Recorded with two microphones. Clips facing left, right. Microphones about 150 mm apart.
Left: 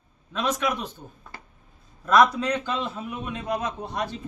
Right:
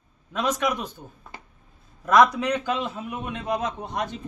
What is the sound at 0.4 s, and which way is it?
Speech, 15° right (ahead or behind).